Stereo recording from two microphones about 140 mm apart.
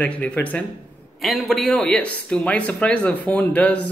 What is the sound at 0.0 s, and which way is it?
A man's voice, 10° left (ahead or behind).